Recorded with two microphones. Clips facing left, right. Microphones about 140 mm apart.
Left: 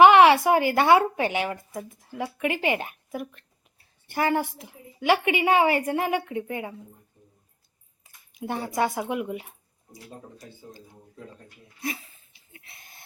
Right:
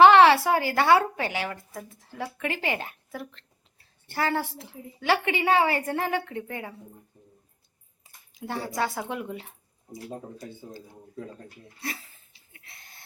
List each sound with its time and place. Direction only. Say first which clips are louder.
0.0 s speech: left 1 dB; 15° left (ahead or behind)
8.4 s speech: left 3 dB; 20° left (ahead or behind)
11.8 s speech: left 4 dB; 20° left (ahead or behind)
12.5 s a sound: left 2 dB; 20° left (ahead or behind)